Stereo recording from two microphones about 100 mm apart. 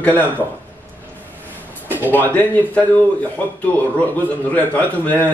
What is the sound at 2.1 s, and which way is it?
A man's voice, 20° left (ahead or behind).